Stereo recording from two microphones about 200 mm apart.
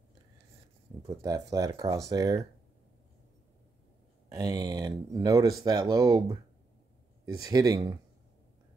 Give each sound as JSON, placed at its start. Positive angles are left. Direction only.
{"t": 1.0, "sound": "speech", "side_deg": -15}
{"t": 4.3, "sound": "speech", "side_deg": -20}